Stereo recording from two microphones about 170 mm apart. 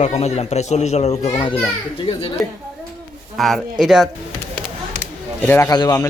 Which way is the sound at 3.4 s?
Centre (ahead or behind).